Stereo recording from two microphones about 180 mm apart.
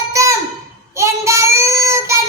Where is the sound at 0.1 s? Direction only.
15° right (ahead or behind).